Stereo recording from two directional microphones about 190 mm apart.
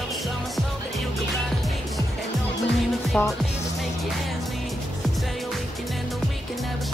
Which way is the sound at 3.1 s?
Centre (ahead or behind).